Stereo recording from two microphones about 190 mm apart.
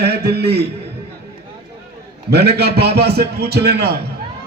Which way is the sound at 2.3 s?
60° right (ahead or behind).